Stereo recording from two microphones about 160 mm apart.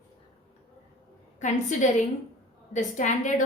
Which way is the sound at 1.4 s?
50° left (ahead or behind).